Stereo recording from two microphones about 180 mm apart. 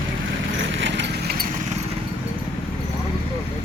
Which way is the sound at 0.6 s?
90° right.